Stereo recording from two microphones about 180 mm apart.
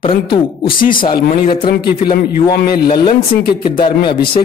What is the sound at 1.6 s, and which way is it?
Speech, 55° left (ahead or behind).